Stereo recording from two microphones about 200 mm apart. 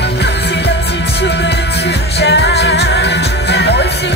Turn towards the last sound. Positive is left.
turn(degrees=60)  # may be behind; listen again after turning